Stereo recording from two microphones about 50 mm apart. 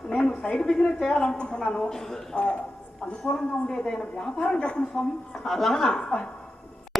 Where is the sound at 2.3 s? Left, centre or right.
Left.